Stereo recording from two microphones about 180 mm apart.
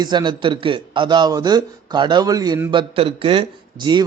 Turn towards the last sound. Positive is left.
turn(degrees=-25)  # may be behind; listen again after turning